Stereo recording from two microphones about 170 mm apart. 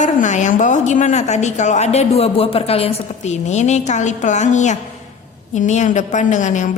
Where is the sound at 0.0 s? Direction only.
45° left (ahead or behind).